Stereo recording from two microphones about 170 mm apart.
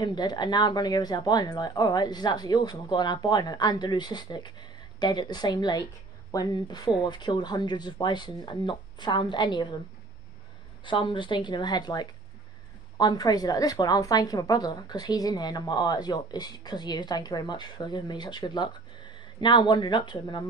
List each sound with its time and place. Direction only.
0.0 s a woman's voice: 25° left (ahead or behind)
10.9 s a woman's voice: 30° left (ahead or behind)